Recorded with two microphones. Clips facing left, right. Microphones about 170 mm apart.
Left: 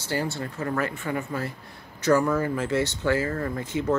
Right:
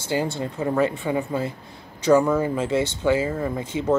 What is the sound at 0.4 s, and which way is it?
Speech, 15° right (ahead or behind).